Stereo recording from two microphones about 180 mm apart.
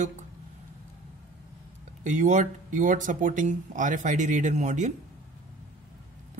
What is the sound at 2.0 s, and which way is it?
A man's voice, 40° right (ahead or behind).